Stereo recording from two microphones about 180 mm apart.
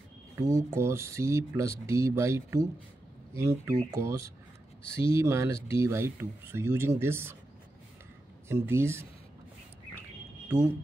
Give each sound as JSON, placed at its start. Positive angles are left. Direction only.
{"t": 0.4, "sound": "speech", "side_deg": -15}
{"t": 8.5, "sound": "speech", "side_deg": -15}